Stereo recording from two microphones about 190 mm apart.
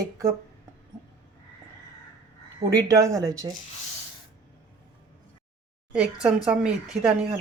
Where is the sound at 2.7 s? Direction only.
15° right (ahead or behind).